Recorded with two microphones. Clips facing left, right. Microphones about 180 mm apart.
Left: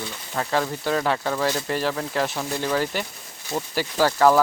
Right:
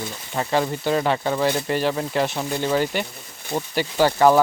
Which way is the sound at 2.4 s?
20° right (ahead or behind).